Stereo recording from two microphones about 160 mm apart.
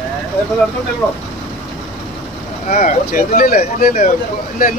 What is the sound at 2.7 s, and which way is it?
Speech, 55° left (ahead or behind).